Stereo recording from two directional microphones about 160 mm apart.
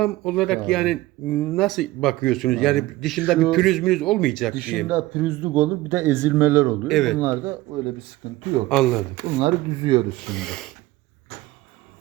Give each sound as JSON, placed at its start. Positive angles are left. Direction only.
{"t": 0.0, "sound": "speech", "side_deg": 0}
{"t": 4.9, "sound": "a man's voice", "side_deg": -10}
{"t": 6.8, "sound": "speech", "side_deg": 0}
{"t": 7.2, "sound": "a man's voice", "side_deg": -15}
{"t": 8.2, "sound": "speech", "side_deg": -35}
{"t": 8.7, "sound": "speech", "side_deg": 0}
{"t": 9.4, "sound": "speech", "side_deg": -35}
{"t": 10.1, "sound": "speech", "side_deg": 5}